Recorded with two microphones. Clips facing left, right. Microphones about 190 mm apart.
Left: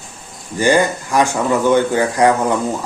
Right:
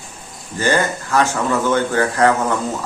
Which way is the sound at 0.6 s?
15° left (ahead or behind).